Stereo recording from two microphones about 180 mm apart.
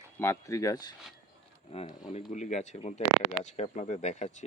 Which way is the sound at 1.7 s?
35° left (ahead or behind).